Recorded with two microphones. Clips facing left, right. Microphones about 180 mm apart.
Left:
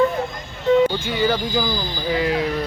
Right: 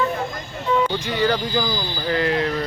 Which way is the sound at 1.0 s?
5° left (ahead or behind).